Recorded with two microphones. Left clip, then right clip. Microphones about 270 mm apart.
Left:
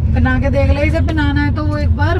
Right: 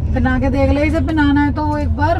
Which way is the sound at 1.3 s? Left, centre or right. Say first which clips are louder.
Right 3 dB; right.